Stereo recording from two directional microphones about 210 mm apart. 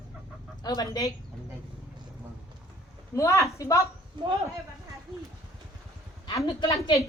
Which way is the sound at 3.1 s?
15° left (ahead or behind).